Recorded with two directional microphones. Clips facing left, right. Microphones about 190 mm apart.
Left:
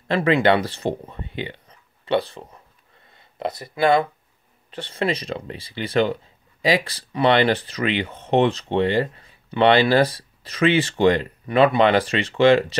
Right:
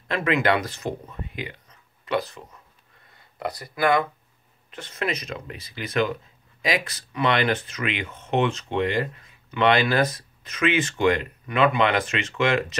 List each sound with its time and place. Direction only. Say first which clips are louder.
0.1 s speech: left 5 dB; 30° left (ahead or behind)